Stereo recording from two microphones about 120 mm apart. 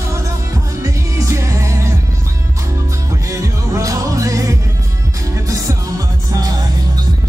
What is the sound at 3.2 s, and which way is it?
Music, 25° right (ahead or behind).